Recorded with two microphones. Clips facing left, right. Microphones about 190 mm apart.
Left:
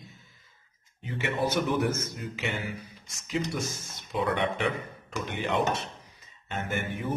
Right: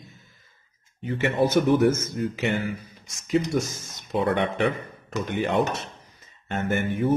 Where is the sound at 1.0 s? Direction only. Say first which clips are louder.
Right 7 dB; 50° right (ahead or behind).